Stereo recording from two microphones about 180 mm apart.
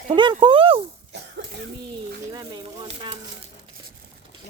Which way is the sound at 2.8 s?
35° right (ahead or behind).